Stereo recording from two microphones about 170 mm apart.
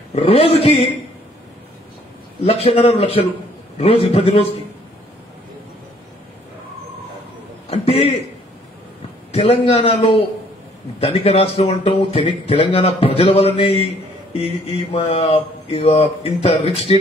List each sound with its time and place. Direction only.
0.1 s speech: 35° left (ahead or behind)
2.4 s speech: 35° left (ahead or behind)
7.7 s chuckle: 35° left (ahead or behind)
9.3 s speech: 35° left (ahead or behind)